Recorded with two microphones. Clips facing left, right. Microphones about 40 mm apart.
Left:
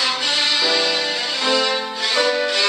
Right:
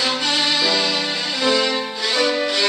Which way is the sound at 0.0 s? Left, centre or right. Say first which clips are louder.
Even; centre.